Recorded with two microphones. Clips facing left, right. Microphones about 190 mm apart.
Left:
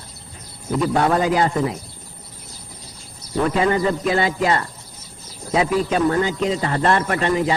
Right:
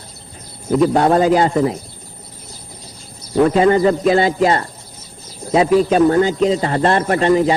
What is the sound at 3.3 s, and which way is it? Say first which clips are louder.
A man's voice: right 6 dB; 30° right (ahead or behind).